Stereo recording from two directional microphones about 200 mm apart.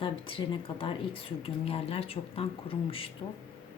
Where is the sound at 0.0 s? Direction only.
25° left (ahead or behind).